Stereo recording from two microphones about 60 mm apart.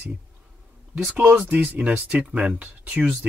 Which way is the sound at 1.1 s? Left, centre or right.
Right.